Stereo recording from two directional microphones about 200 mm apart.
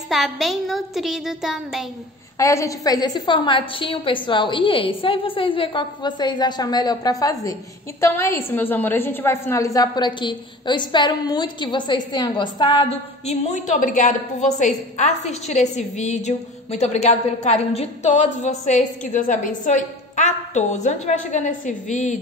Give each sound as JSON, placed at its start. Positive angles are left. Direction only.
{"t": 0.1, "sound": "speech", "side_deg": 0}
{"t": 2.3, "sound": "a woman's voice", "side_deg": 15}
{"t": 13.3, "sound": "a woman's voice", "side_deg": 40}